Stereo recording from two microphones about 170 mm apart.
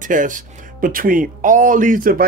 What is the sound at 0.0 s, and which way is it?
Speech, 50° right (ahead or behind).